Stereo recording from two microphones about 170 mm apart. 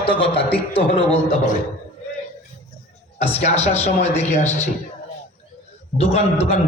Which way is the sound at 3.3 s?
40° left (ahead or behind).